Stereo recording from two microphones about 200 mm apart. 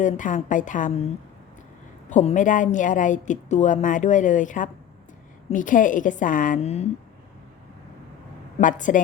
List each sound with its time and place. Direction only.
0.0 s a woman's voice: 40° left (ahead or behind)
2.0 s a woman's voice: 40° left (ahead or behind)
8.6 s a woman's voice: 40° left (ahead or behind)